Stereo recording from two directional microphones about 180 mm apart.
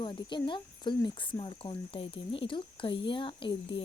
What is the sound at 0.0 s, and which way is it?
Speech, 25° left (ahead or behind).